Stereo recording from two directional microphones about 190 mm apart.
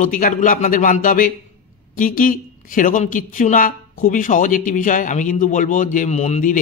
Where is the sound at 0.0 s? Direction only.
45° left (ahead or behind).